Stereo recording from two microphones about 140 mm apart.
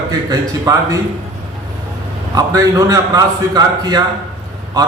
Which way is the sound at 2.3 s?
25° right (ahead or behind).